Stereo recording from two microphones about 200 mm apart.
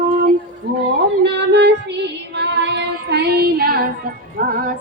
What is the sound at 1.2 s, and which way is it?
Child singing, 60° right (ahead or behind).